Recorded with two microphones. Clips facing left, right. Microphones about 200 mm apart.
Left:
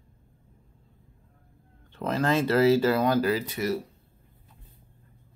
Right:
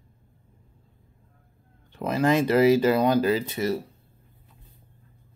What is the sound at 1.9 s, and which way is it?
Speech, 15° right (ahead or behind).